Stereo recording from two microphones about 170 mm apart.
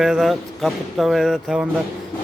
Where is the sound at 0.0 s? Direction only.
Centre (ahead or behind).